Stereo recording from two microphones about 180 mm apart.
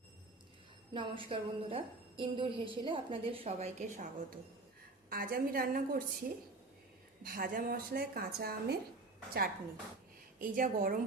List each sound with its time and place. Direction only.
0.9 s a woman's voice: 30° right (ahead or behind)
5.0 s a woman's voice: 55° right (ahead or behind)
10.4 s a woman's voice: 50° right (ahead or behind)